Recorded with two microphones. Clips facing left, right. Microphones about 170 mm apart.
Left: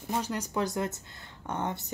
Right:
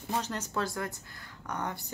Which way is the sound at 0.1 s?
10° left (ahead or behind).